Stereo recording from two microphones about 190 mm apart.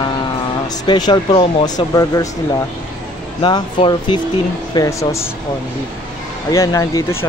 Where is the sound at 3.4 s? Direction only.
25° left (ahead or behind).